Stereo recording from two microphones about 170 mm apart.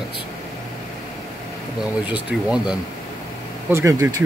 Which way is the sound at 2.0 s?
5° right (ahead or behind).